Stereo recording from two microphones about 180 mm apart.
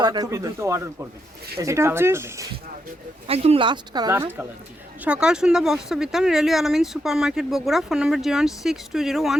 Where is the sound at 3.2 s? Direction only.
35° right (ahead or behind).